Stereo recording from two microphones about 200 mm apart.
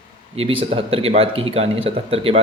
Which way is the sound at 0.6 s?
30° right (ahead or behind).